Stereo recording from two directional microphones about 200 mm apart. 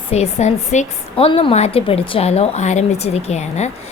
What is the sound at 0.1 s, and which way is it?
A woman's voice, 35° left (ahead or behind).